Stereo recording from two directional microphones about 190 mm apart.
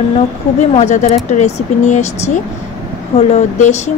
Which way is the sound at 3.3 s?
35° left (ahead or behind).